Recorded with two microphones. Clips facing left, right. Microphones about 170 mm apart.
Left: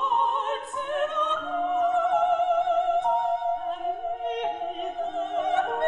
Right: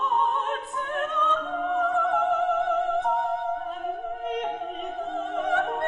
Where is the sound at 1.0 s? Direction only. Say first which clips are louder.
Right 1 dB; 20° left (ahead or behind).